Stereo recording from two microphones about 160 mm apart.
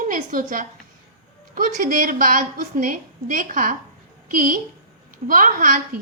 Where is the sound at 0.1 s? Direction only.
60° right (ahead or behind).